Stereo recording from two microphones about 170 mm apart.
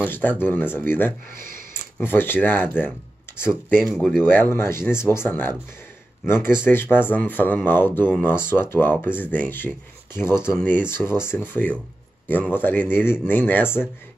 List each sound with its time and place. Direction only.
0.4 s speech: 10° left (ahead or behind)
1.3 s speech: 55° right (ahead or behind)
1.7 s speech: 10° left (ahead or behind)
3.8 s speech: centre (ahead or behind)
4.2 s speech: 10° left (ahead or behind)